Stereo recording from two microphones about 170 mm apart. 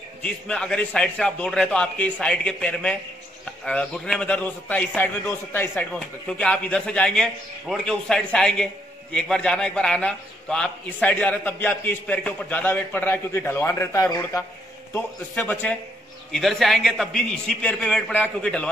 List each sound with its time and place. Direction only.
0.2 s a man's voice: 5° left (ahead or behind)